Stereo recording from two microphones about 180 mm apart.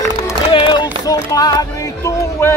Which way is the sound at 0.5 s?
25° left (ahead or behind).